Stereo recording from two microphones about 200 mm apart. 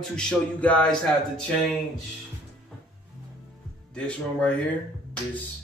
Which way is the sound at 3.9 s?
5° left (ahead or behind).